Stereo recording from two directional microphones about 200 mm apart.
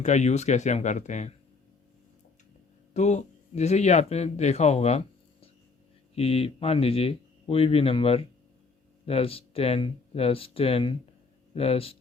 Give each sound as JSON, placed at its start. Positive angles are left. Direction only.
{"t": 0.0, "sound": "speech", "side_deg": 35}
{"t": 2.9, "sound": "a man's voice", "side_deg": 35}